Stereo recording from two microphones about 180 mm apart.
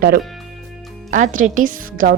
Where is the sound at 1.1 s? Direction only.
45° right (ahead or behind).